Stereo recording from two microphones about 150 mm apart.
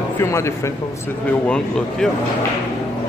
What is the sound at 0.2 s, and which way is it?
Speech, 20° left (ahead or behind).